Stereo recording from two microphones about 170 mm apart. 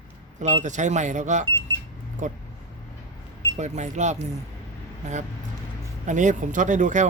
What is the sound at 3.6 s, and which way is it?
Speech, 45° right (ahead or behind).